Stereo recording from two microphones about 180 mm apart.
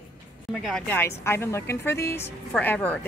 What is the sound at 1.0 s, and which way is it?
A woman's voice, 15° left (ahead or behind).